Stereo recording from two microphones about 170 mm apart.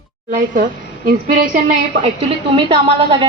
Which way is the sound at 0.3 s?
50° right (ahead or behind).